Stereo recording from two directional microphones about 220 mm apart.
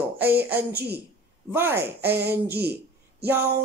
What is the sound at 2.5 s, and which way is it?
Speech, 45° right (ahead or behind).